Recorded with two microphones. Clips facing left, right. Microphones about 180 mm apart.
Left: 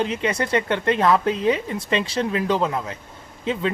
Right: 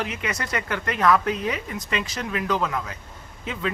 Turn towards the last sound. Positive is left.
turn(degrees=30)  # may be behind; listen again after turning